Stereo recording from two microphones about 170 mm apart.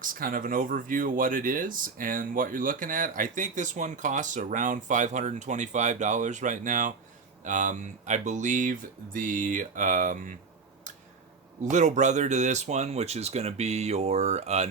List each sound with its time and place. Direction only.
0.0 s speech: 55° right (ahead or behind)
11.6 s speech: 45° right (ahead or behind)